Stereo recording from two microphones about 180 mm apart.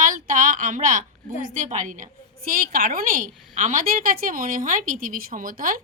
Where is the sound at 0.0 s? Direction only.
50° right (ahead or behind).